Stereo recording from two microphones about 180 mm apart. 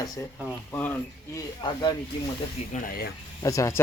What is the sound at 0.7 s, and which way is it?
Speech, 10° left (ahead or behind).